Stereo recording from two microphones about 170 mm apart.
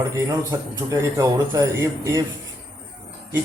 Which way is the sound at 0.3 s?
20° right (ahead or behind).